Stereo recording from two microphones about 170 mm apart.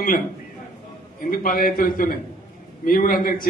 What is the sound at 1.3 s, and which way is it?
A man's voice, 55° left (ahead or behind).